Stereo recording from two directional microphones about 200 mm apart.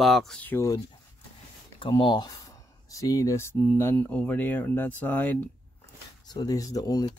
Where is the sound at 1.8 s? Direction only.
25° left (ahead or behind).